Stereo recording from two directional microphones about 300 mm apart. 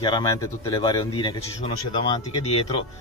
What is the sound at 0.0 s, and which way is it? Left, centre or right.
Speech, centre.